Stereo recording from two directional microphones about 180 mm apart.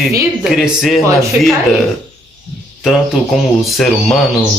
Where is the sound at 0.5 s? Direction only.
Centre (ahead or behind).